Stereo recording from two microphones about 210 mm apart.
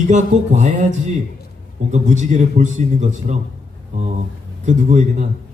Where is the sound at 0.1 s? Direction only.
35° right (ahead or behind).